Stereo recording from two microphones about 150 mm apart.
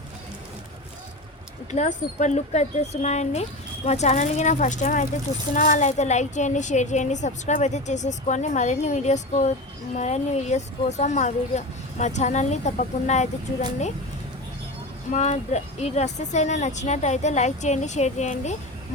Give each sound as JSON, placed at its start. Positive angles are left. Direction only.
{"t": 1.7, "sound": "a woman's voice", "side_deg": 55}
{"t": 15.1, "sound": "a woman's voice", "side_deg": 50}